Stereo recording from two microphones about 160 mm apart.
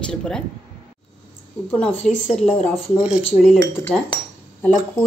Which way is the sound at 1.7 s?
5° left (ahead or behind).